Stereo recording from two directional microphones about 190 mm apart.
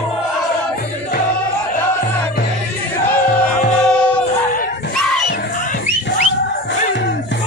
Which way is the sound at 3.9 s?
5° left (ahead or behind).